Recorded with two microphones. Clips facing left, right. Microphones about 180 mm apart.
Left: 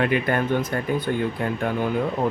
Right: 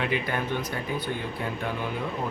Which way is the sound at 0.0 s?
55° left (ahead or behind).